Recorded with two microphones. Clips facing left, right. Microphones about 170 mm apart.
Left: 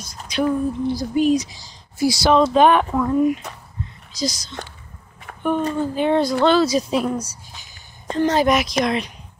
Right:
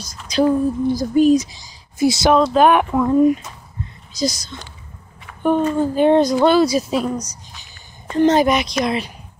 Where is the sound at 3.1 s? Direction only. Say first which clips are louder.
Right 6 dB; 35° right (ahead or behind).